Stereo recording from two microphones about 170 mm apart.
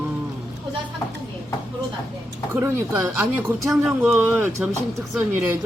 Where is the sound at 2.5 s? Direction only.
10° right (ahead or behind).